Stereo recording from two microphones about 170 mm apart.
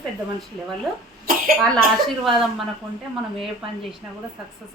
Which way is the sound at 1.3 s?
55° right (ahead or behind).